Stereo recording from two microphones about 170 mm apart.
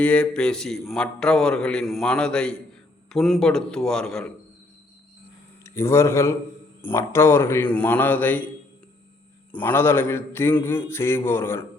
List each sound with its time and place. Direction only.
0.0 s a man's voice: 5° left (ahead or behind)
5.6 s a man's voice: 15° left (ahead or behind)
9.5 s a man's voice: 10° left (ahead or behind)